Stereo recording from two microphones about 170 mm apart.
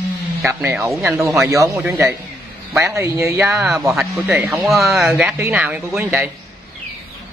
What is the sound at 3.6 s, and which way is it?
Speech, centre (ahead or behind).